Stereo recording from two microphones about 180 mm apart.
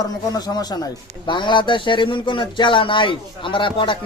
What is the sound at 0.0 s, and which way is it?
Speech, 20° left (ahead or behind).